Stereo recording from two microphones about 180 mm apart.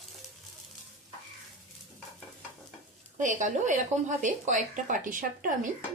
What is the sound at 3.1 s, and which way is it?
Speech, 45° right (ahead or behind).